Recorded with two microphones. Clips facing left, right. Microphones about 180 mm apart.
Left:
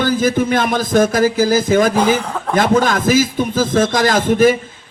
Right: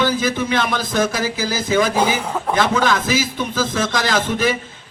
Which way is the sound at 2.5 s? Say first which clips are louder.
Left 4 dB; 45° left (ahead or behind).